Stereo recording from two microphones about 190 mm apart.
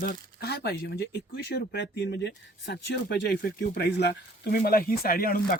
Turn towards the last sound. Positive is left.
turn(degrees=50)  # may be behind; listen again after turning